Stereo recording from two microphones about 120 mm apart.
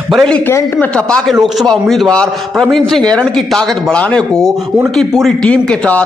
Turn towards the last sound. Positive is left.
turn(degrees=10)  # may be behind; listen again after turning